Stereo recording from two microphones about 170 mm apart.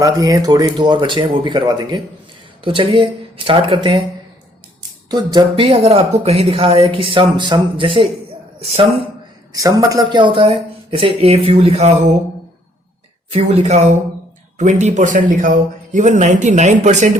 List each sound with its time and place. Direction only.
0.0 s speech: 20° right (ahead or behind)
5.0 s speech: 25° right (ahead or behind)
9.5 s speech: 20° right (ahead or behind); by 11.9 s 35° right (ahead or behind)
13.3 s speech: 40° right (ahead or behind)